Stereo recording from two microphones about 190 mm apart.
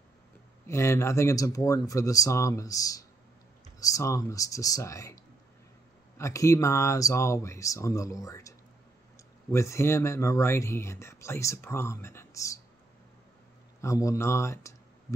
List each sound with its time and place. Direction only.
0.7 s speech: 15° left (ahead or behind)
13.7 s speech: 15° left (ahead or behind)